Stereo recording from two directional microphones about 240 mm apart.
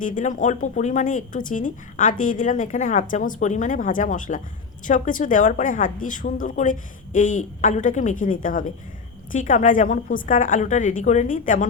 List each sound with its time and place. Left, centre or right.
0.0 s speech: left